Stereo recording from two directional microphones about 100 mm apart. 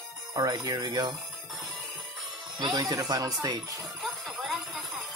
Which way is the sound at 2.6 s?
40° right (ahead or behind).